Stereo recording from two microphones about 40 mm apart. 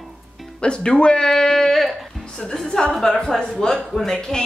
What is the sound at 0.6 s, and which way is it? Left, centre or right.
Speech, left.